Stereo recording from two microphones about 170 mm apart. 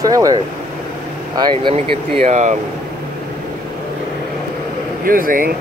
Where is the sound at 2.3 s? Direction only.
45° right (ahead or behind).